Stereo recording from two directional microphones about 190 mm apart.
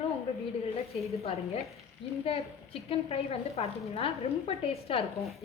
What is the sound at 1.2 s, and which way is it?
A woman's voice, 35° left (ahead or behind).